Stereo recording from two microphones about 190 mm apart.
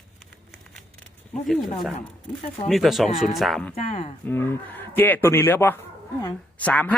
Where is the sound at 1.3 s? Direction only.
Centre (ahead or behind).